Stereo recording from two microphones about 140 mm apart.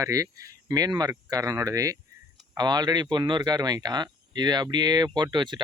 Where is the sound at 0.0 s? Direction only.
25° right (ahead or behind).